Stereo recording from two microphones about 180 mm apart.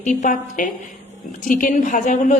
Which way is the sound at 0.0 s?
45° left (ahead or behind).